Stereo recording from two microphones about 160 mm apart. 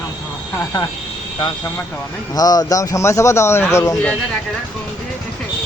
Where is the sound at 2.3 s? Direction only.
25° left (ahead or behind).